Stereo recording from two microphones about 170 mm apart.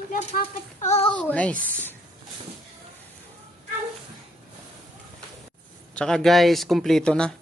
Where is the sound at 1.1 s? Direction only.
10° left (ahead or behind).